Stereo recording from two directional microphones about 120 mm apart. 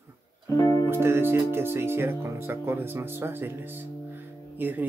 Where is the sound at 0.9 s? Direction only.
20° right (ahead or behind).